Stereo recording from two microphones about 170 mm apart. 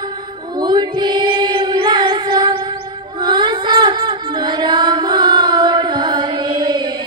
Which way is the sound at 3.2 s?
25° right (ahead or behind).